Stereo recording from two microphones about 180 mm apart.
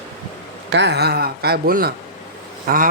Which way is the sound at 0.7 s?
70° right (ahead or behind).